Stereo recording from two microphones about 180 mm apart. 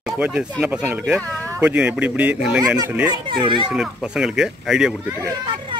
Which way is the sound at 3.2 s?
25° right (ahead or behind).